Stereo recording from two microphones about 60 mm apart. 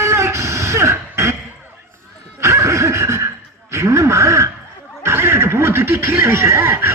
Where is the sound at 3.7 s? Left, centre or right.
Right.